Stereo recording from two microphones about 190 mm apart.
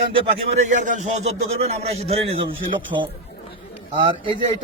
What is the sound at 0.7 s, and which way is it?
A man's voice, 40° right (ahead or behind).